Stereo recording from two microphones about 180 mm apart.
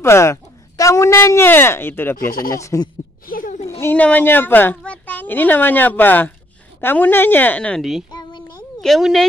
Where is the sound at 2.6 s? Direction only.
15° left (ahead or behind).